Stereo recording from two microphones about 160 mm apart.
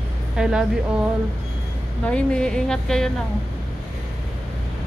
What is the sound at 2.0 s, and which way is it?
A woman's voice, 5° left (ahead or behind).